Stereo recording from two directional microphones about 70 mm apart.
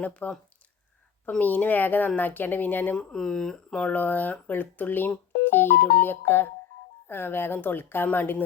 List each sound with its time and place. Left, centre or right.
0.0 s speech: left
1.4 s speech: left
3.0 s speech: centre; by 8.4 s left